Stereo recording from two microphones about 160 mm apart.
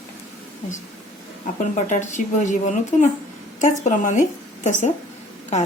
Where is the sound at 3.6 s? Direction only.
50° left (ahead or behind).